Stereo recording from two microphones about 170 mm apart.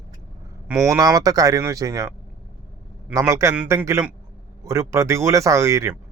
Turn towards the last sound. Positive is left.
turn(degrees=-15)  # may be behind; listen again after turning